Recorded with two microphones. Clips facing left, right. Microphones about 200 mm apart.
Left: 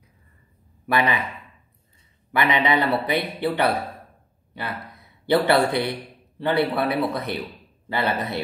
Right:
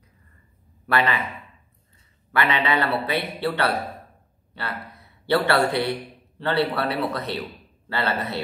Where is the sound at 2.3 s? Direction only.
15° left (ahead or behind).